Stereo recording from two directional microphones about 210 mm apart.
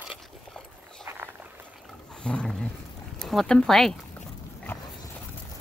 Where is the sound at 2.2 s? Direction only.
5° left (ahead or behind).